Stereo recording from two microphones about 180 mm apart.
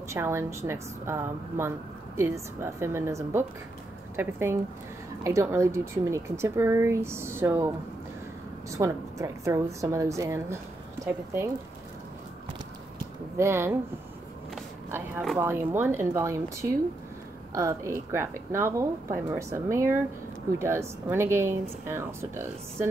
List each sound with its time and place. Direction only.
0.1 s speech: 15° right (ahead or behind)
13.4 s speech: 15° right (ahead or behind)
14.9 s speech: 10° right (ahead or behind)
17.6 s speech: 15° right (ahead or behind)